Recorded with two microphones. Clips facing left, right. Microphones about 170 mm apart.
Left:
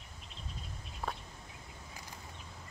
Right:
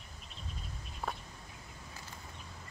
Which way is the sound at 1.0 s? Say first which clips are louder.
Even; centre (ahead or behind).